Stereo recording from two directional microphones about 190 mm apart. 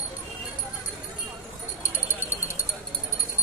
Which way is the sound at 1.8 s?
10° right (ahead or behind).